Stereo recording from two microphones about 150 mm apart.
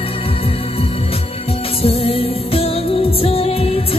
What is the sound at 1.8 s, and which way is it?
Music, 40° left (ahead or behind).